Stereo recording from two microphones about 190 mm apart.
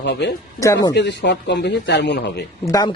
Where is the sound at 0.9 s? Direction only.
65° left (ahead or behind).